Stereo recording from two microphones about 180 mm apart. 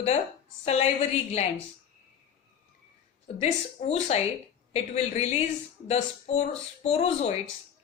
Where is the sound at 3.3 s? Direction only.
35° left (ahead or behind).